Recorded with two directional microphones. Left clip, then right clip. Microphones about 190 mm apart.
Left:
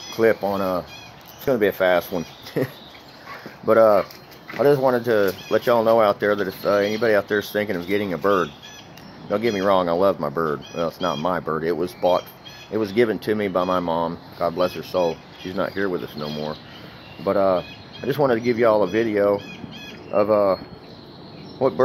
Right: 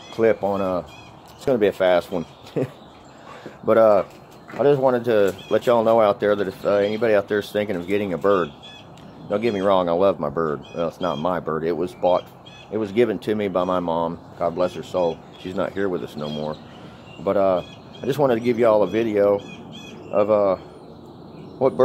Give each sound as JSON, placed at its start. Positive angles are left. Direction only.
{"t": 0.1, "sound": "speech", "side_deg": -10}
{"t": 14.9, "sound": "speech", "side_deg": 5}
{"t": 15.4, "sound": "speech", "side_deg": -10}
{"t": 17.2, "sound": "speech", "side_deg": -5}
{"t": 20.1, "sound": "speech", "side_deg": 0}